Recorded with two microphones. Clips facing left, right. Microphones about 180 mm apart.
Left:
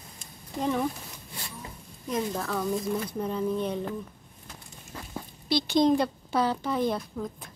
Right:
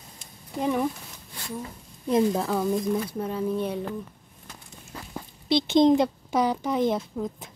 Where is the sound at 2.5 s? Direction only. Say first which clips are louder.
Right 4 dB; 10° right (ahead or behind).